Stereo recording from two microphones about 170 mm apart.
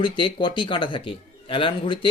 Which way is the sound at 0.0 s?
30° left (ahead or behind).